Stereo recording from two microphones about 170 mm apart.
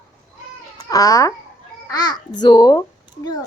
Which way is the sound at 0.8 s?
20° left (ahead or behind).